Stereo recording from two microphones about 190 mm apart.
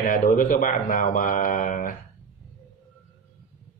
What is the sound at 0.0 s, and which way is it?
Speech, 45° left (ahead or behind).